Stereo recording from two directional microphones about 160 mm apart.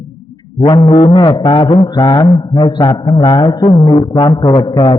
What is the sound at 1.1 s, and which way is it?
Mantra, 30° left (ahead or behind).